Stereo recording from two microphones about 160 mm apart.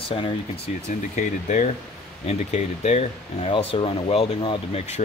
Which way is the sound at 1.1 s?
50° left (ahead or behind).